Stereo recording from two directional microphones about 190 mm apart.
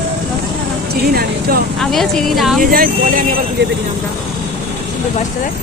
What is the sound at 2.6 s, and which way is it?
Speech, 45° right (ahead or behind).